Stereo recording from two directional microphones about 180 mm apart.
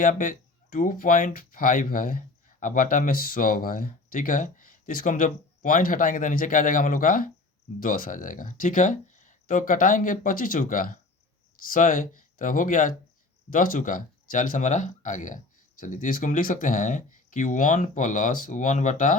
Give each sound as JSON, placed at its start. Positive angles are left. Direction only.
{"t": 0.0, "sound": "speech", "side_deg": 50}